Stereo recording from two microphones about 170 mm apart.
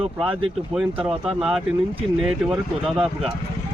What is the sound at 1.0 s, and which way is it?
Speech, 5° right (ahead or behind).